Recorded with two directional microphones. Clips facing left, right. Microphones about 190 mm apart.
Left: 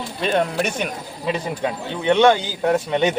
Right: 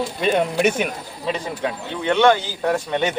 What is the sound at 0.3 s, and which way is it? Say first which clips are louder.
Speech: right 1 dB; 5° right (ahead or behind).